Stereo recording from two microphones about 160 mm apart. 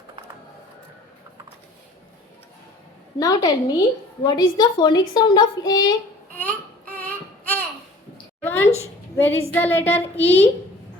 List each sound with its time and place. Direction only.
3.2 s a woman's voice: 25° left (ahead or behind)
6.3 s a sound: 10° left (ahead or behind)
9.1 s a woman's voice: 15° left (ahead or behind)